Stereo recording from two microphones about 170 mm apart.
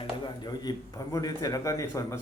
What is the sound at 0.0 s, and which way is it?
A man's voice, 25° left (ahead or behind).